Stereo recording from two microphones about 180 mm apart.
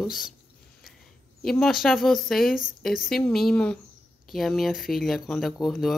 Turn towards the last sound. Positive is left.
turn(degrees=0)  # may be behind; listen again after turning